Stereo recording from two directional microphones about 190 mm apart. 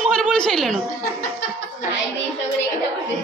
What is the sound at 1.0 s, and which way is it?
Speech, 55° left (ahead or behind).